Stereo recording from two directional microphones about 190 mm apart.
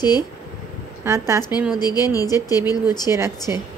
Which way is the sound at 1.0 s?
15° right (ahead or behind).